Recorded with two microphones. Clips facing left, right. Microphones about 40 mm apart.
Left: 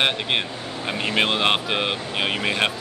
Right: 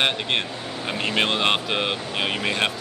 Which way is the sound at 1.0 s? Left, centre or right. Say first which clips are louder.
Left 1 dB; centre.